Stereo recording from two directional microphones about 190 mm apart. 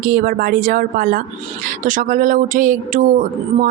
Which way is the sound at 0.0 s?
50° right (ahead or behind).